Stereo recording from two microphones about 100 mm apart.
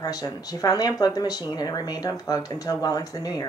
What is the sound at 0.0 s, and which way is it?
Speech, 40° left (ahead or behind).